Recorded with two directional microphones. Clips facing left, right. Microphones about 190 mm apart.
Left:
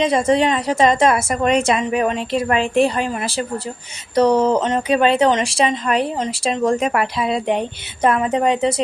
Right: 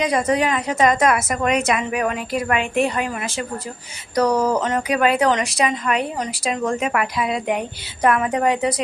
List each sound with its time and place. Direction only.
0.0 s speech: 25° left (ahead or behind)